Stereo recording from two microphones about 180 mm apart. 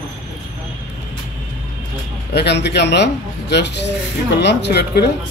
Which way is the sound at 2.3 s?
70° left (ahead or behind).